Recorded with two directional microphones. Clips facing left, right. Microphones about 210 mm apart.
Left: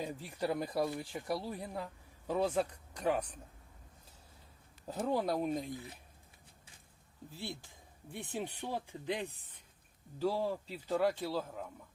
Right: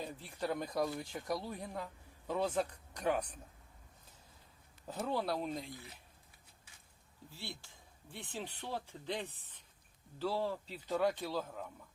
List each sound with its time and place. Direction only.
0.0 s speech: 10° left (ahead or behind)
4.9 s speech: 15° left (ahead or behind)
7.3 s speech: 15° left (ahead or behind)